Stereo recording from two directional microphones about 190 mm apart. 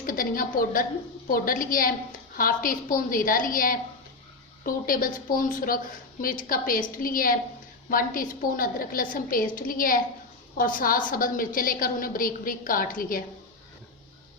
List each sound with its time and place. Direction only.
0.0 s a woman's voice: 50° left (ahead or behind)